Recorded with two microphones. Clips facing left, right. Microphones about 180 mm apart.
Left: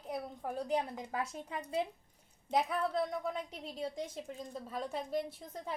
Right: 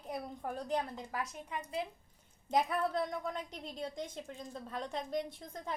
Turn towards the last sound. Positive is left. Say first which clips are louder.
# left 1 dB
turn(degrees=5)  # may be behind; listen again after turning